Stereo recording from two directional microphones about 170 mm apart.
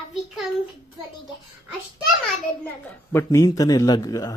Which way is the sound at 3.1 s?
15° left (ahead or behind).